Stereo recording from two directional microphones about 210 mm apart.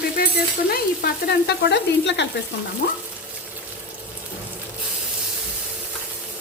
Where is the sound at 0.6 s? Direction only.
45° left (ahead or behind).